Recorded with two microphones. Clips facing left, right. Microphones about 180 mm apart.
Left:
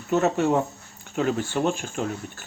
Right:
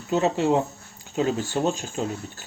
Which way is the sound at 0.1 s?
20° right (ahead or behind).